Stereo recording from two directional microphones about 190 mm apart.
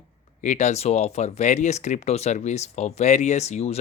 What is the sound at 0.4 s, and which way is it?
Speech, 40° left (ahead or behind).